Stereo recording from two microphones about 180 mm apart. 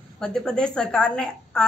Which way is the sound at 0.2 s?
5° left (ahead or behind).